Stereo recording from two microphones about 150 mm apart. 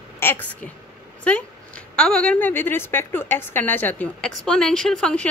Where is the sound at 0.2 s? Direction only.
15° left (ahead or behind).